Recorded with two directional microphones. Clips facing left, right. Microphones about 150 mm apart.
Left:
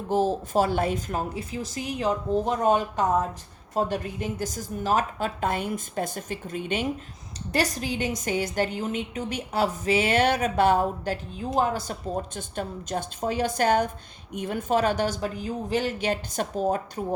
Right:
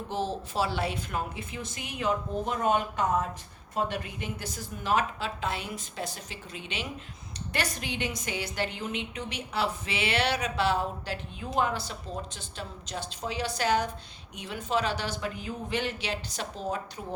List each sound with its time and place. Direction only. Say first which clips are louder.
0.1 s a woman's voice: left 9 dB; 45° left (ahead or behind)
7.5 s a woman's voice: left 7 dB; 40° left (ahead or behind)